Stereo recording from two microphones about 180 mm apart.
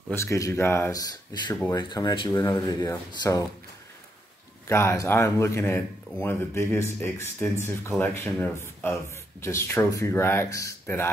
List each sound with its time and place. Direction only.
0.1 s speech: 15° left (ahead or behind)
4.6 s speech: 15° left (ahead or behind)